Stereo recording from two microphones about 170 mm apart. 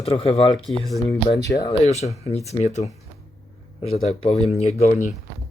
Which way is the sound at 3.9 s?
35° left (ahead or behind).